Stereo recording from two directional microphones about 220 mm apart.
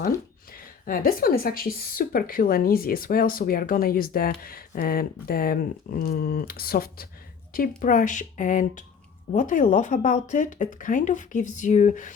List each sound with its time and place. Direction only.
0.5 s a woman's voice: 40° left (ahead or behind)